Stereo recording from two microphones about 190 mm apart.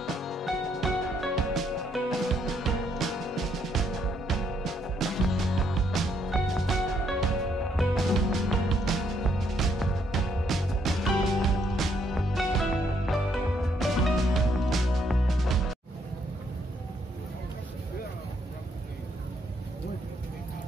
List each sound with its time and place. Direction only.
0.0 s music: centre (ahead or behind)